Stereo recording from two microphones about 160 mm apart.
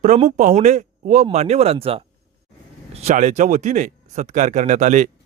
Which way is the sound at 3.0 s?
45° right (ahead or behind).